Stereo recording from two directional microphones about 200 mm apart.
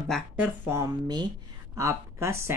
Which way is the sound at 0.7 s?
15° right (ahead or behind).